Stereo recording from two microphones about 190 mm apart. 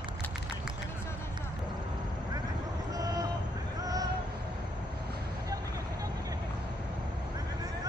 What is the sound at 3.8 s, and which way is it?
Vehicle, 20° right (ahead or behind).